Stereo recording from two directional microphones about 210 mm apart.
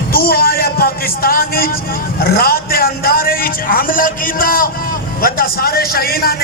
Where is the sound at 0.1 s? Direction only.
45° left (ahead or behind).